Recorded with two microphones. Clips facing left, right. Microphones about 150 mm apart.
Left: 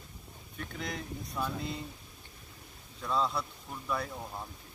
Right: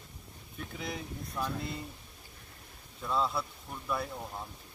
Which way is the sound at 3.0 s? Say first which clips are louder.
Even; centre (ahead or behind).